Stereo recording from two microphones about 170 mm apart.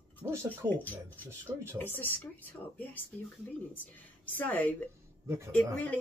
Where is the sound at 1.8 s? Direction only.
10° left (ahead or behind).